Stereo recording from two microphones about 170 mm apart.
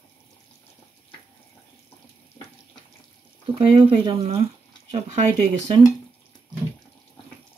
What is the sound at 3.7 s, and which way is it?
Speech, 35° right (ahead or behind).